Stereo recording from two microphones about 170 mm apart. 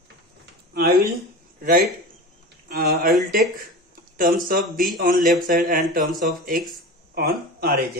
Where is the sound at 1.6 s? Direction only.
60° right (ahead or behind).